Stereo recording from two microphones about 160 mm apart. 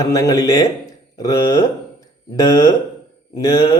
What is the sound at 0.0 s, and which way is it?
Speech, 20° left (ahead or behind).